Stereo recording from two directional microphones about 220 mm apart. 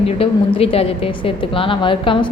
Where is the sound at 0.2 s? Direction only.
25° left (ahead or behind).